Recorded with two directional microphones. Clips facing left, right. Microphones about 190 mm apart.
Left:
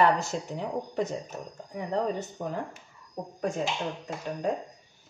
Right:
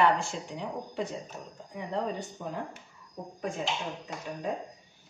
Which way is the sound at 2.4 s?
50° left (ahead or behind).